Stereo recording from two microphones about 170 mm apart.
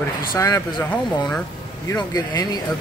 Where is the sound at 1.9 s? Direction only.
20° left (ahead or behind).